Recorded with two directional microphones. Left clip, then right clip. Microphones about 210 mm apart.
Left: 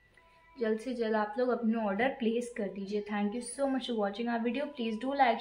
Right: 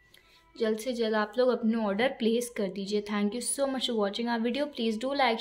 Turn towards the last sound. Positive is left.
turn(degrees=-45)  # may be behind; listen again after turning